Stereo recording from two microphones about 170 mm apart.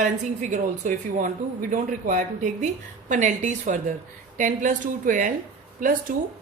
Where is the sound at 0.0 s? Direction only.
45° right (ahead or behind).